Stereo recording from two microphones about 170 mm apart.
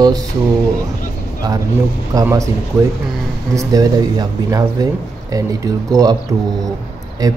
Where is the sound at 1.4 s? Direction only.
25° right (ahead or behind).